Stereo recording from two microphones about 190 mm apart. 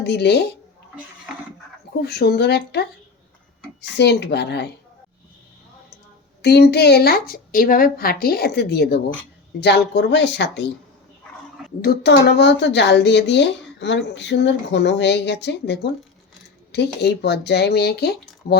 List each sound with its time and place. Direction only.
0.0 s speech: 60° left (ahead or behind)
2.0 s speech: 60° left (ahead or behind)
6.4 s speech: 60° left (ahead or behind)
11.8 s speech: 55° left (ahead or behind)